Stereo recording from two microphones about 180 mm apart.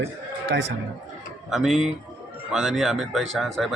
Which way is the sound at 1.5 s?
Centre (ahead or behind).